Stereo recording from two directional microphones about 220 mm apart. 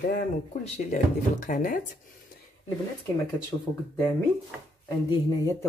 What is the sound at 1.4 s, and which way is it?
Speech, 35° left (ahead or behind).